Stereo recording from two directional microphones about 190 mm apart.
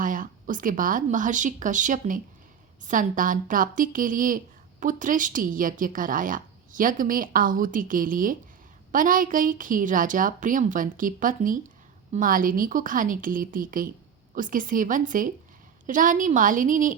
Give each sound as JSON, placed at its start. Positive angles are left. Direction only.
{"t": 0.0, "sound": "speech", "side_deg": -45}